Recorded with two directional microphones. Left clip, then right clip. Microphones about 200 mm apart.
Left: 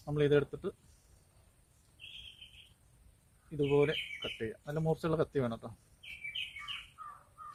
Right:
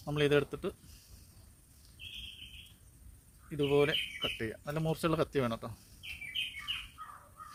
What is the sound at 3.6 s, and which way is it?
Speech, 45° right (ahead or behind).